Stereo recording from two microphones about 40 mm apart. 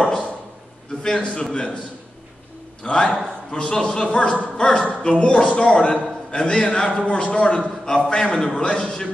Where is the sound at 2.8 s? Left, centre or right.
Left.